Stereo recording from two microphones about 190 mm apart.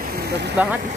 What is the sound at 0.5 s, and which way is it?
Speech, 10° right (ahead or behind).